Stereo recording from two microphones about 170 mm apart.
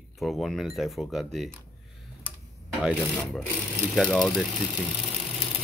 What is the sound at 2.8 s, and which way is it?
Speech, centre (ahead or behind).